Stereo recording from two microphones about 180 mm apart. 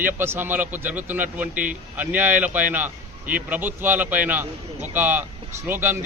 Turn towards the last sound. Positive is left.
turn(degrees=-10)  # may be behind; listen again after turning